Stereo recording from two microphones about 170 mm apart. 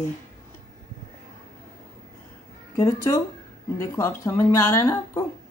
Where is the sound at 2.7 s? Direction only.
20° left (ahead or behind).